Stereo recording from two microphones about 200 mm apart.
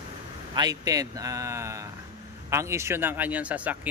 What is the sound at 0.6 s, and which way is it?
Speech, 20° right (ahead or behind).